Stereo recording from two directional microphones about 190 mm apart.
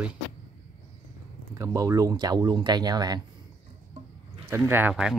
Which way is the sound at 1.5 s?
15° right (ahead or behind).